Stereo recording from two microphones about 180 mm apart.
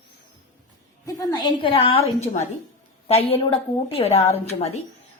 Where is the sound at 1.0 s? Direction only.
20° left (ahead or behind); by 4.8 s 35° left (ahead or behind).